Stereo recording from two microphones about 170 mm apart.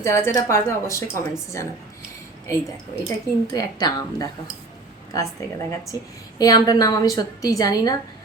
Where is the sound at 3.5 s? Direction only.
25° left (ahead or behind).